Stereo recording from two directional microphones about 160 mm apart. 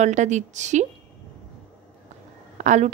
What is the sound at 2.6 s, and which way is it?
Speech, 50° right (ahead or behind).